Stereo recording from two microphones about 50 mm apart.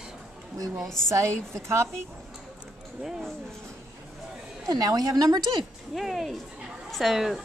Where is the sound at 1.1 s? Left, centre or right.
Right.